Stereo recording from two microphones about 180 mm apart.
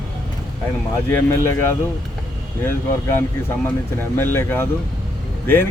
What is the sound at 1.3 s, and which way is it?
Speech, 15° left (ahead or behind).